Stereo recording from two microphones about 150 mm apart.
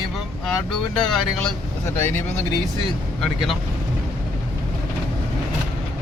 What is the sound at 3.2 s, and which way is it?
Speech, centre (ahead or behind).